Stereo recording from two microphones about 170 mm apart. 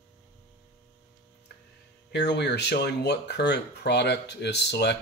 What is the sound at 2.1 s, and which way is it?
Speech, 80° left.